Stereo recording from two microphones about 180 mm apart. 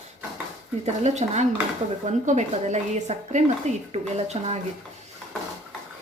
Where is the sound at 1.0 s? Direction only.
40° right (ahead or behind).